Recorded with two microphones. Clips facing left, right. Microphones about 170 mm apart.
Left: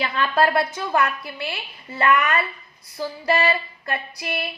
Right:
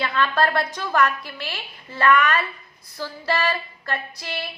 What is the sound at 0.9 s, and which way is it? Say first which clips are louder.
Speech: right 4 dB; 25° left (ahead or behind).